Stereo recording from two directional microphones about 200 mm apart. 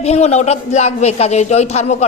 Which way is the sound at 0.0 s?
30° left (ahead or behind).